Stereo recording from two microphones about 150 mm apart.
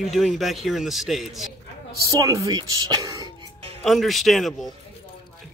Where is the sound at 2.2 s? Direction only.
20° right (ahead or behind).